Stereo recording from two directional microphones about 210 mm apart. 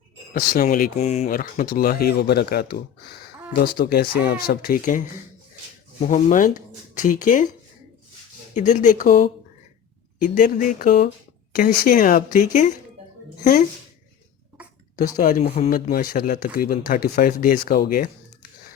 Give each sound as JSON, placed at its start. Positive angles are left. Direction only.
{"t": 0.3, "sound": "speech", "side_deg": 40}
{"t": 8.5, "sound": "speech", "side_deg": 35}
{"t": 15.2, "sound": "speech", "side_deg": 35}
{"t": 15.9, "sound": "speech", "side_deg": 45}